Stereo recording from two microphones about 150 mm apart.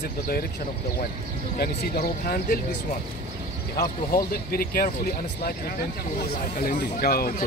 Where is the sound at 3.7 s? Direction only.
85° left.